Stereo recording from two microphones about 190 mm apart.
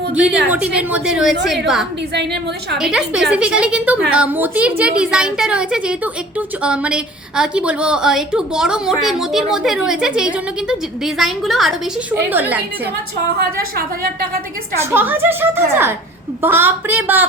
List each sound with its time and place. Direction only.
0.1 s a woman's voice: 5° right (ahead or behind)
2.1 s a woman's voice: 65° right (ahead or behind)
2.7 s a woman's voice: 5° right (ahead or behind)
14.8 s a woman's voice: 10° right (ahead or behind)